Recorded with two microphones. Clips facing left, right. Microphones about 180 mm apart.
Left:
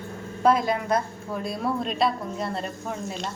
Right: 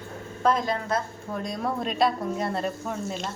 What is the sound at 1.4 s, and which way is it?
A woman's voice, centre (ahead or behind).